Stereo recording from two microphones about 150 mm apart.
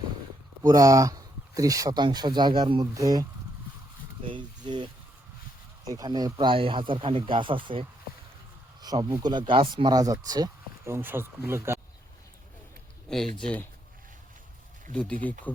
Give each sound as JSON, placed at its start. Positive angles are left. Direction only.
{"t": 0.6, "sound": "speech", "side_deg": -20}
{"t": 4.2, "sound": "speech", "side_deg": -35}
{"t": 5.9, "sound": "speech", "side_deg": -25}
{"t": 13.1, "sound": "speech", "side_deg": 5}
{"t": 14.9, "sound": "speech", "side_deg": 10}